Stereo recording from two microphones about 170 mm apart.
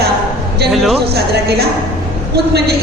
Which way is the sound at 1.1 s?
70° right (ahead or behind).